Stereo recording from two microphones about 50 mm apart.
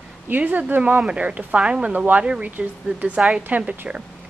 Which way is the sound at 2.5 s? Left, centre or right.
Right.